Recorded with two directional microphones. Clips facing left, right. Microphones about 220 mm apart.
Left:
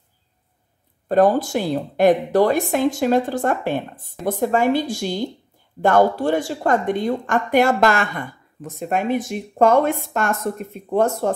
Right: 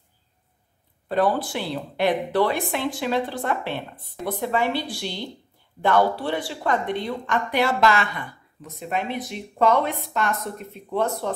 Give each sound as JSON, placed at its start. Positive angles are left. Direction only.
{"t": 1.0, "sound": "a woman's voice", "side_deg": 45}